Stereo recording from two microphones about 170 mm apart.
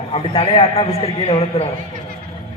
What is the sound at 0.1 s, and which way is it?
A man's voice, 35° left (ahead or behind).